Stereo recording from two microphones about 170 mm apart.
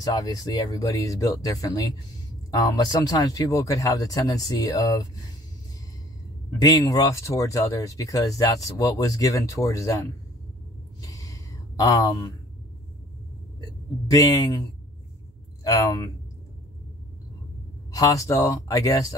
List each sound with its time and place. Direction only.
0.0 s speech: 20° left (ahead or behind)
6.6 s speech: 20° left (ahead or behind)
11.0 s a sound: 20° left (ahead or behind)
13.6 s speech: 20° left (ahead or behind)
17.9 s speech: 20° left (ahead or behind)